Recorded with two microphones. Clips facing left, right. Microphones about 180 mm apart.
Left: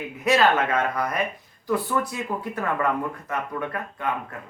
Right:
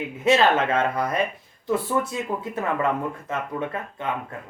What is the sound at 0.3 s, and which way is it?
Speech, 25° right (ahead or behind).